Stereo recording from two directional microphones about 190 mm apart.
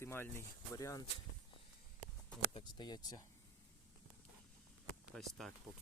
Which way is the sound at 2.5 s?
25° left (ahead or behind).